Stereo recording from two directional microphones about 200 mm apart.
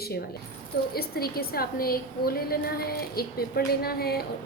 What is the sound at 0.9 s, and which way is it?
A woman's voice, 50° left (ahead or behind).